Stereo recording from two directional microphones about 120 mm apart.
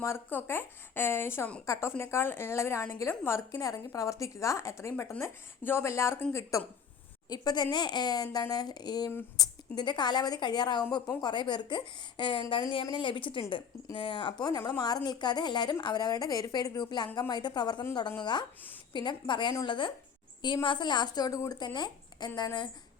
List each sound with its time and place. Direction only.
0.0 s a woman's voice: 20° left (ahead or behind); by 22.3 s 35° left (ahead or behind)